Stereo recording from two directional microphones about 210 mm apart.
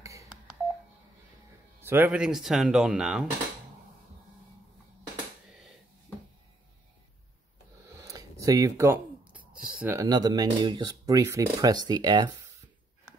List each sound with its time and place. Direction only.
0.0 s telephone dialing: 15° right (ahead or behind)
1.8 s speech: 10° right (ahead or behind)
7.9 s a sound: 15° right (ahead or behind)
9.5 s speech: 5° right (ahead or behind); by 12.3 s 20° right (ahead or behind)